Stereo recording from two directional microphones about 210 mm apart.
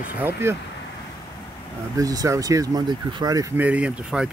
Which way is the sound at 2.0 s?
15° right (ahead or behind).